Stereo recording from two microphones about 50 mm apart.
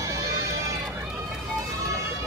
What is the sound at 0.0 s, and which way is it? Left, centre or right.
Music, right.